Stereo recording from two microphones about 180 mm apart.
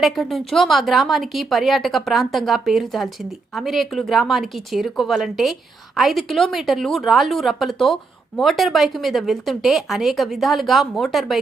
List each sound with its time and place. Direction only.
0.0 s a woman's voice: centre (ahead or behind)